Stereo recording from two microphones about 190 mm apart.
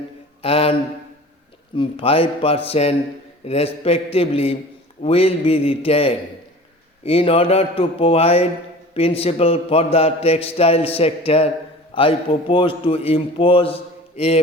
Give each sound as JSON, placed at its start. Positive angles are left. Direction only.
{"t": 0.4, "sound": "mantra", "side_deg": 30}
{"t": 1.7, "sound": "a man's voice", "side_deg": 30}
{"t": 3.4, "sound": "mantra", "side_deg": 30}
{"t": 11.9, "sound": "a man's voice", "side_deg": 30}
{"t": 14.2, "sound": "mantra", "side_deg": 30}